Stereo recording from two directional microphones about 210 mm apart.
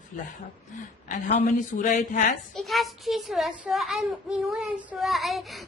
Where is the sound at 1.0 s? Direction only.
40° left (ahead or behind).